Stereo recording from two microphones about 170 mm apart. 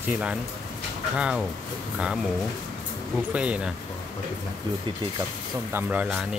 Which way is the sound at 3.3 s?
5° right (ahead or behind).